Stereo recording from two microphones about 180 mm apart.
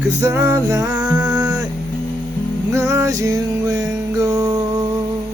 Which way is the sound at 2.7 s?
15° right (ahead or behind).